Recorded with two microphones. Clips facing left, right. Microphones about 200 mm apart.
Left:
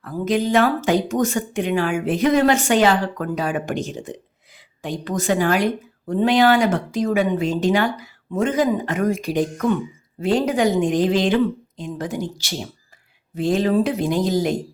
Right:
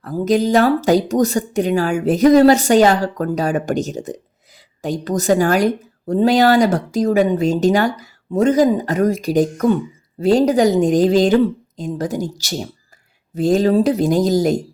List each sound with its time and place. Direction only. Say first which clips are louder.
0.0 s a woman's voice: right 4 dB; 40° right (ahead or behind)